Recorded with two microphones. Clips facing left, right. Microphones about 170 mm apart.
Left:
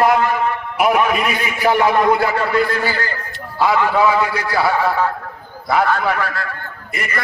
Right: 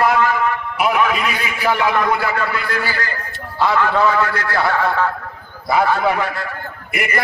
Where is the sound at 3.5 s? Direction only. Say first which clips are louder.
Left 1 dB; 10° left (ahead or behind).